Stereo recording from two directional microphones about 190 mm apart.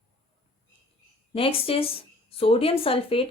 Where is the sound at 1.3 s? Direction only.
30° left (ahead or behind).